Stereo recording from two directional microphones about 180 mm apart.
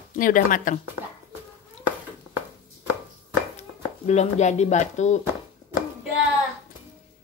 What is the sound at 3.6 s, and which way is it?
Speech, 40° left (ahead or behind).